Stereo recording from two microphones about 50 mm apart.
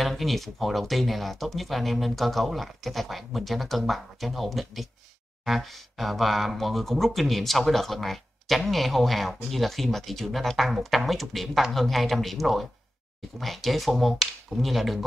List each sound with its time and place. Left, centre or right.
0.0 s speech: centre